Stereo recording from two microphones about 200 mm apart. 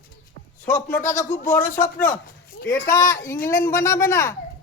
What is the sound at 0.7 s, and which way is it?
Speech, 40° left (ahead or behind).